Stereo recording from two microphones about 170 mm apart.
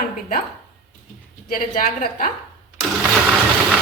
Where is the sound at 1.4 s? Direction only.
50° left (ahead or behind).